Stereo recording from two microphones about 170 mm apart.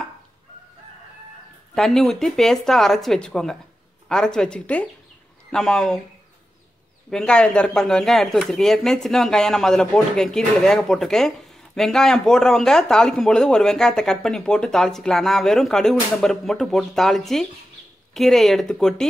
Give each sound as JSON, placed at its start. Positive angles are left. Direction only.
{"t": 1.8, "sound": "speech", "side_deg": 0}
{"t": 7.1, "sound": "speech", "side_deg": 5}